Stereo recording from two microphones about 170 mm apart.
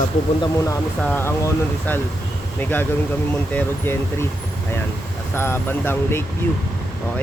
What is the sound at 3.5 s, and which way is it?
Speech, 10° left (ahead or behind).